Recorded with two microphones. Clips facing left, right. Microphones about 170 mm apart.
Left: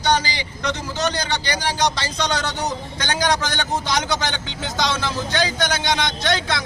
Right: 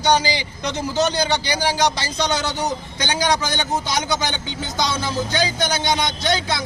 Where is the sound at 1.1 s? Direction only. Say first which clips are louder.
Right 4 dB; 10° right (ahead or behind).